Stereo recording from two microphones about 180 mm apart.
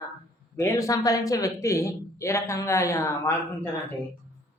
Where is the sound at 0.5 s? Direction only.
15° left (ahead or behind).